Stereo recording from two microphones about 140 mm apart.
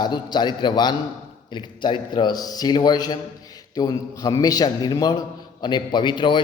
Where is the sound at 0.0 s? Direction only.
30° left (ahead or behind).